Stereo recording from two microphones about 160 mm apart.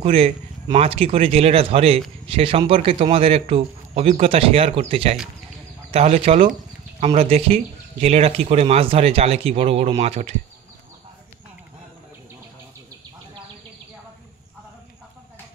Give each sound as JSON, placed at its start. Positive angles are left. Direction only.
{"t": 0.0, "sound": "speech", "side_deg": -35}